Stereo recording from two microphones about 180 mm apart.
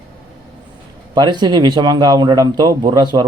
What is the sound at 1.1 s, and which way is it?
A man's voice, 25° right (ahead or behind).